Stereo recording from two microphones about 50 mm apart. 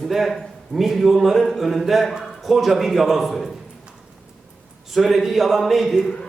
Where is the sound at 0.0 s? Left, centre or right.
Centre.